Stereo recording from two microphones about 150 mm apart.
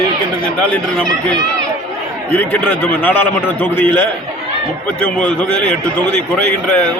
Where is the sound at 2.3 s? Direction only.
10° left (ahead or behind).